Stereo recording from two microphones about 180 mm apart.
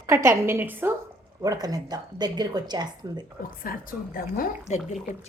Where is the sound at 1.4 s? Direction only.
20° right (ahead or behind).